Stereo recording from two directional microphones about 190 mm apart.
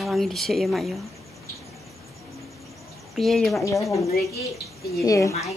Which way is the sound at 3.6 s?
15° left (ahead or behind).